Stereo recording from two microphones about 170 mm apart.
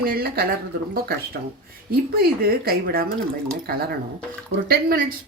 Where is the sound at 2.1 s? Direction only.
65° right (ahead or behind).